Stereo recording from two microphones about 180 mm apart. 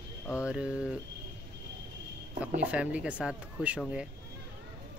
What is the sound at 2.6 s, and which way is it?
Speech, 5° right (ahead or behind).